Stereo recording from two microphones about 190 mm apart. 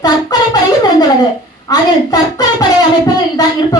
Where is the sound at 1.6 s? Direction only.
20° left (ahead or behind).